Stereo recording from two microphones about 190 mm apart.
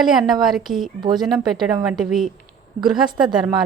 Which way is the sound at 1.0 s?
20° right (ahead or behind).